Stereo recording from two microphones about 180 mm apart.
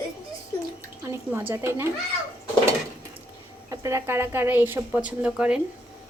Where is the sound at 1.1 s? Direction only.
10° right (ahead or behind).